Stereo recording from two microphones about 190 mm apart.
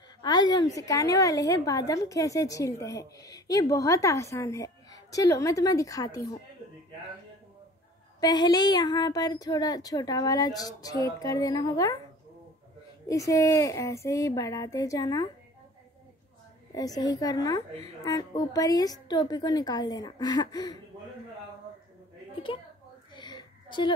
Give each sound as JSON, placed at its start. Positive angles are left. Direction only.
{"t": 0.2, "sound": "a woman's voice", "side_deg": 20}
{"t": 8.2, "sound": "speech", "side_deg": 20}
{"t": 13.1, "sound": "a woman's voice", "side_deg": 15}
{"t": 16.7, "sound": "speech", "side_deg": 20}
{"t": 23.1, "sound": "a sound", "side_deg": 25}